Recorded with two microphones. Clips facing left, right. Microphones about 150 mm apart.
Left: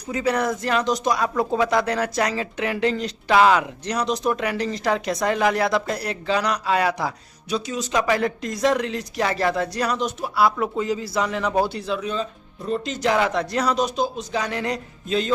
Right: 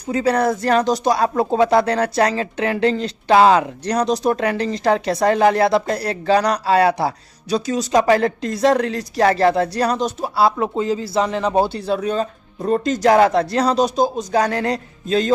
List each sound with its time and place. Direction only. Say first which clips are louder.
0.1 s speech: right 5 dB; 35° right (ahead or behind)